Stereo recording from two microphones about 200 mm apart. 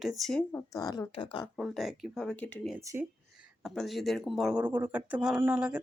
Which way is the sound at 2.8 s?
15° right (ahead or behind).